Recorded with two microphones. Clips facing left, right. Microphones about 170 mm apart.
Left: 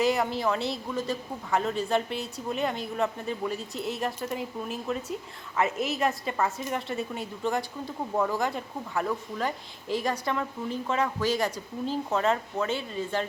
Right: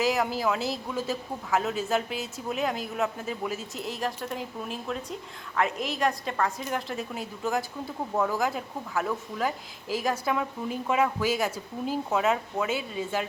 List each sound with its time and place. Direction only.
0.0 s speech: centre (ahead or behind)